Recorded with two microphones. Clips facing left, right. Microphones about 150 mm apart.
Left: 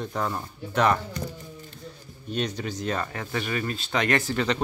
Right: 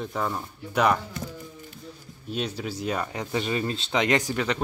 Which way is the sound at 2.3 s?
5° right (ahead or behind).